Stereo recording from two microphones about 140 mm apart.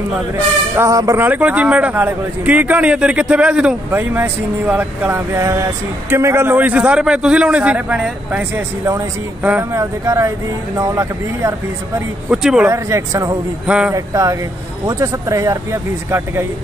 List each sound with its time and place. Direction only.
0.7 s a man's voice: 20° right (ahead or behind)
12.3 s a man's voice: 5° right (ahead or behind)
12.7 s speech: 20° right (ahead or behind)
13.7 s a man's voice: 10° right (ahead or behind)
13.9 s speech: 25° right (ahead or behind)